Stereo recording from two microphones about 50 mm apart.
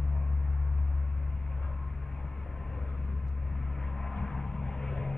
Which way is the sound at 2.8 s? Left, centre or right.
Left.